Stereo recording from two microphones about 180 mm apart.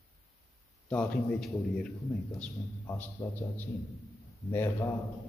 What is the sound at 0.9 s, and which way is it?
A man's voice, 5° left (ahead or behind).